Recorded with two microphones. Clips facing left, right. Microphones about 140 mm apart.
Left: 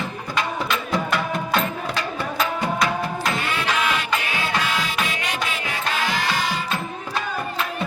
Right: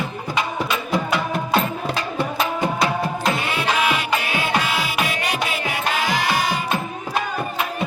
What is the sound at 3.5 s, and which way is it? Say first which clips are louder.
Music: right 2 dB; 10° right (ahead or behind).